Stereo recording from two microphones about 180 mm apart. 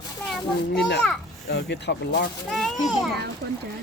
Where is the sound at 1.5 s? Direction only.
70° left (ahead or behind).